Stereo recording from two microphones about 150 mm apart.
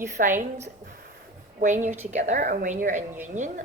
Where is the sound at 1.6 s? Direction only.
55° right (ahead or behind).